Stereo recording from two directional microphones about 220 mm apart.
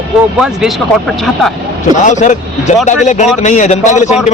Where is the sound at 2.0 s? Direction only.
35° left (ahead or behind).